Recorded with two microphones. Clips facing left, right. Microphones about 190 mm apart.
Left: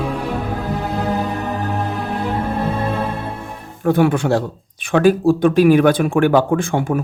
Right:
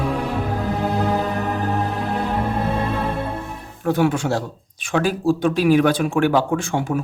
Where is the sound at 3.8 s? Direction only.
55° left (ahead or behind).